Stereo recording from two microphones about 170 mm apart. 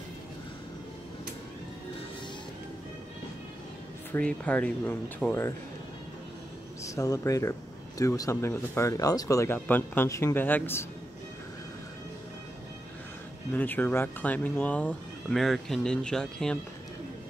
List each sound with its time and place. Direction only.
4.1 s speech: 5° left (ahead or behind)
6.8 s speech: 20° left (ahead or behind)
13.5 s speech: 10° left (ahead or behind)